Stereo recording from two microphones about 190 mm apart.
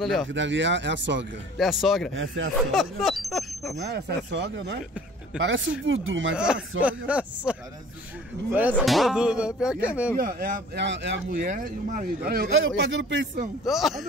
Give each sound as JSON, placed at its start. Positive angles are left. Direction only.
{"t": 0.0, "sound": "speech", "side_deg": 0}
{"t": 0.3, "sound": "speech", "side_deg": -75}
{"t": 1.6, "sound": "speech", "side_deg": 0}
{"t": 2.1, "sound": "speech", "side_deg": -90}
{"t": 2.7, "sound": "speech", "side_deg": 0}
{"t": 3.8, "sound": "speech", "side_deg": -60}
{"t": 5.4, "sound": "speech", "side_deg": -75}
{"t": 6.3, "sound": "speech", "side_deg": -5}
{"t": 10.1, "sound": "speech", "side_deg": -50}
{"t": 12.5, "sound": "speech", "side_deg": -80}
{"t": 13.7, "sound": "speech", "side_deg": 0}